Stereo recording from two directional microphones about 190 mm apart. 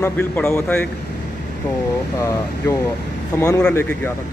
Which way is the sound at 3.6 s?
5° left (ahead or behind).